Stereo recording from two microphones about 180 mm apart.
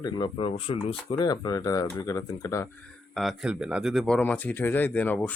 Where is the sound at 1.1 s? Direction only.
20° left (ahead or behind).